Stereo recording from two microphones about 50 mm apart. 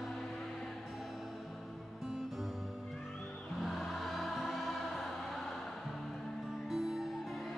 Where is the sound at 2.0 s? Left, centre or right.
Centre.